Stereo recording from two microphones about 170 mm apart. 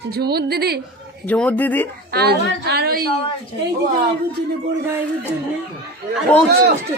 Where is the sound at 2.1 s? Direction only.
70° right (ahead or behind).